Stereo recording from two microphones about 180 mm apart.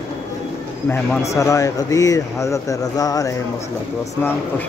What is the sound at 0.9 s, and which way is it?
Speech, 15° left (ahead or behind).